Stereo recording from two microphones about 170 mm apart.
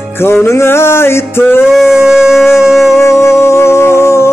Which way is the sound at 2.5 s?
Centre (ahead or behind).